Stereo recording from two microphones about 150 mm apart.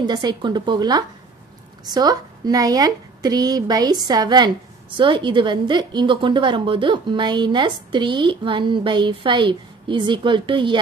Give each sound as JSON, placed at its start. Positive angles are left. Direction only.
{"t": 0.0, "sound": "a woman's voice", "side_deg": -30}